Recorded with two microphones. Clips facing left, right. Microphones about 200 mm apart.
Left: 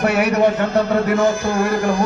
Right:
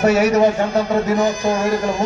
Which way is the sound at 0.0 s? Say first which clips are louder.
Right 2 dB; 60° left (ahead or behind).